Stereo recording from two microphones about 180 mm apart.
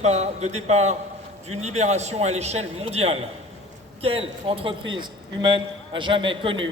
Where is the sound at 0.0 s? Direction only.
40° right (ahead or behind).